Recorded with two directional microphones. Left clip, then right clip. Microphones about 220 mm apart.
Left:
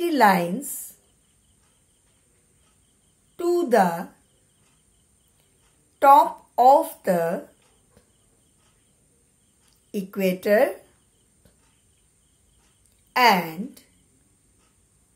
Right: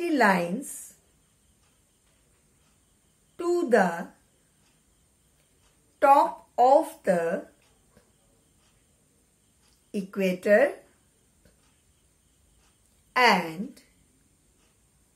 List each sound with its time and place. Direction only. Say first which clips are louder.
0.0 s a woman's voice: left 4 dB; 15° left (ahead or behind)
3.3 s speech: left 3 dB; 15° left (ahead or behind)
5.9 s speech: left 5 dB; 15° left (ahead or behind)
9.8 s speech: left 3 dB; 10° left (ahead or behind)
13.1 s speech: left 3 dB; 15° left (ahead or behind)